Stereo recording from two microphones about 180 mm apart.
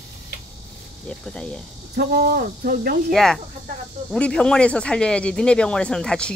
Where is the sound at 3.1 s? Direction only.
Centre (ahead or behind).